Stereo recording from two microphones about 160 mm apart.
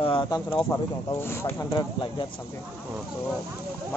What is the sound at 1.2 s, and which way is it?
Speech, 15° left (ahead or behind).